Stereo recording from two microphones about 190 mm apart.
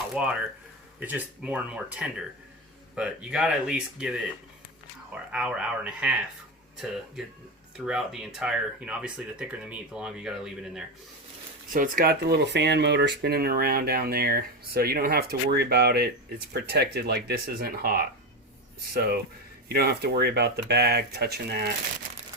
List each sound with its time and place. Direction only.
0.1 s speech: 5° right (ahead or behind)
5.1 s speech: 5° right (ahead or behind)
7.9 s speech: 5° right (ahead or behind)
11.7 s speech: 45° right (ahead or behind)